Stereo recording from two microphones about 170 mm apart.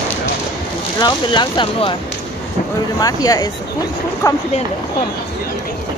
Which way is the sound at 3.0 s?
20° left (ahead or behind).